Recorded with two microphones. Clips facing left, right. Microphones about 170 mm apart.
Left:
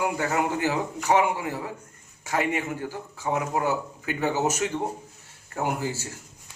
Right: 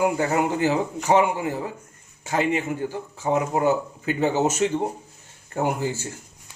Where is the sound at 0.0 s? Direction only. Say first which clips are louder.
Right 4 dB; 25° right (ahead or behind).